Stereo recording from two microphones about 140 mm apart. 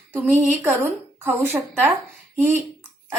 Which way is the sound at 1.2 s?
15° right (ahead or behind).